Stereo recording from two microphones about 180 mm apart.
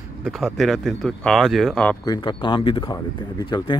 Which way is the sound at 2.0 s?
25° left (ahead or behind).